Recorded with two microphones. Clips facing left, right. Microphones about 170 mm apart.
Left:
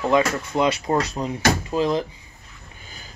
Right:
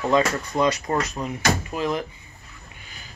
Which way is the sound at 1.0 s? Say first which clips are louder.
Left 3 dB; 30° left (ahead or behind).